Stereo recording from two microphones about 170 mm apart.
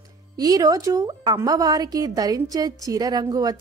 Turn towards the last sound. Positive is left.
turn(degrees=-20)  # may be behind; listen again after turning